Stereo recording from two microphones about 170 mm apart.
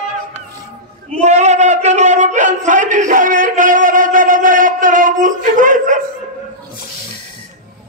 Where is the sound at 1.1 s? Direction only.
45° right (ahead or behind).